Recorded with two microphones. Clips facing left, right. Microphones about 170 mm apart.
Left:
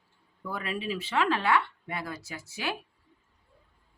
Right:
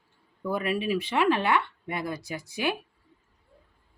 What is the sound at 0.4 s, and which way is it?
Speech, 15° right (ahead or behind).